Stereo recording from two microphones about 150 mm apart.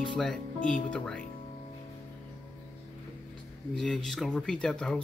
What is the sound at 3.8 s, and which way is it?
Speech, 5° left (ahead or behind).